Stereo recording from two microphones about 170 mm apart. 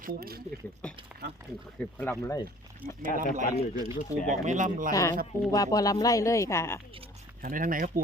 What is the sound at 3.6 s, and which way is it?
Speech, 30° left (ahead or behind).